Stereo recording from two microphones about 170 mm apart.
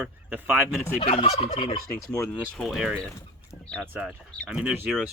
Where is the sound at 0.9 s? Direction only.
35° left (ahead or behind).